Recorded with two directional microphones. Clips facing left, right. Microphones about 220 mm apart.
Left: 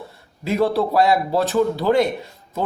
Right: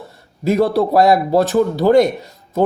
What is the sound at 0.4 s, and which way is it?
Speech, 45° right (ahead or behind).